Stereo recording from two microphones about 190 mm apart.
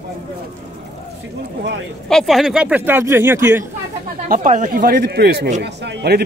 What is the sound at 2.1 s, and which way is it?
Speech, centre (ahead or behind).